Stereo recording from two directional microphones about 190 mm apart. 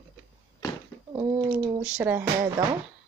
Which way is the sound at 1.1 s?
20° right (ahead or behind).